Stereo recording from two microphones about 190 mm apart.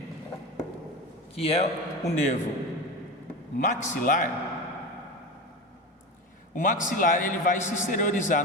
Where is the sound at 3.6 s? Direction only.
40° left (ahead or behind).